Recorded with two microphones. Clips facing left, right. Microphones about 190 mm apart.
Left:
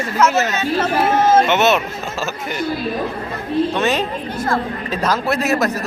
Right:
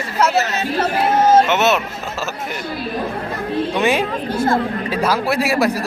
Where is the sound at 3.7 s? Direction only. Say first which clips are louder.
Right 1 dB; 15° right (ahead or behind).